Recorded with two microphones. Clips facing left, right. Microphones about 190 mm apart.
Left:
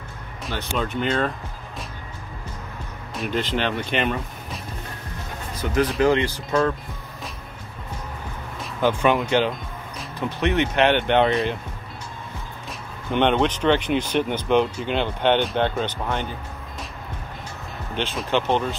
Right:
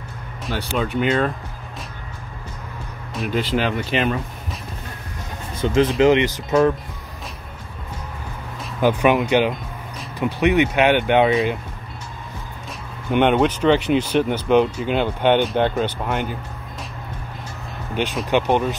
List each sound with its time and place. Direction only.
0.6 s speech: 10° right (ahead or behind)
3.2 s speech: 5° right (ahead or behind)
5.6 s speech: 25° right (ahead or behind)
8.8 s speech: 15° right (ahead or behind)
13.1 s speech: 10° right (ahead or behind)
18.3 s speech: 15° right (ahead or behind)